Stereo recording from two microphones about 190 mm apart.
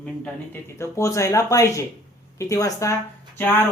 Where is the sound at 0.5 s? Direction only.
15° left (ahead or behind).